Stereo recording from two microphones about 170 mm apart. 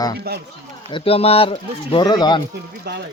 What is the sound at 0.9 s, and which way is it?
Speech, 35° left (ahead or behind).